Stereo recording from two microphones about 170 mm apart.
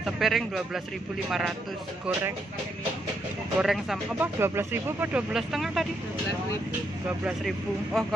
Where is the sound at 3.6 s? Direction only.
5° right (ahead or behind).